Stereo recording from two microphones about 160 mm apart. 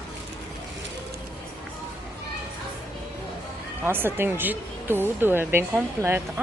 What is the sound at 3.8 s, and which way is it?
Speech, 15° right (ahead or behind).